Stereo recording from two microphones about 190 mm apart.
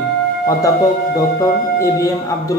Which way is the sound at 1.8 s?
15° left (ahead or behind).